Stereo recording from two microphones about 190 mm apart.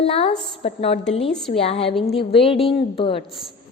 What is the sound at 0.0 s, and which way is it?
A woman's voice, 30° left (ahead or behind).